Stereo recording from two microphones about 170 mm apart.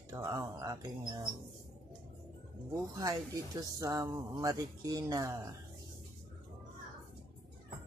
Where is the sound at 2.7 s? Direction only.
20° right (ahead or behind).